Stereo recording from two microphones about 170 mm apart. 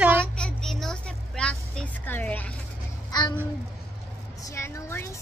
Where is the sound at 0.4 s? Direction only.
5° left (ahead or behind).